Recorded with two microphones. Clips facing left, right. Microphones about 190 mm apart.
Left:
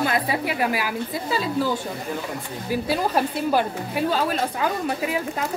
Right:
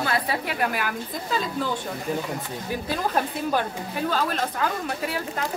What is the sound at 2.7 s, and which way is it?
A woman's voice, 10° left (ahead or behind).